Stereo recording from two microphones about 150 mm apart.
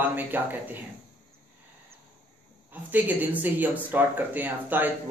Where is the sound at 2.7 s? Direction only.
10° right (ahead or behind).